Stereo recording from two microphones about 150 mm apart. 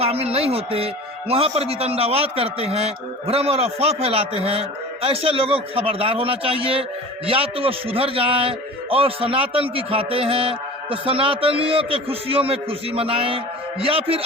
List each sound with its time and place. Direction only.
0.0 s a man's voice: 40° right (ahead or behind)